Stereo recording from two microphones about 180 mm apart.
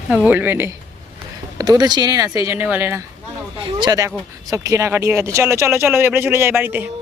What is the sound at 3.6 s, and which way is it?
Speech, 25° right (ahead or behind).